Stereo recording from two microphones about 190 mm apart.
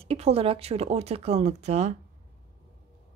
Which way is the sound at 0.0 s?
30° right (ahead or behind).